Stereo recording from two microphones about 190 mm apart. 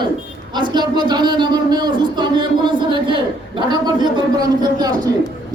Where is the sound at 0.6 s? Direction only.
25° right (ahead or behind).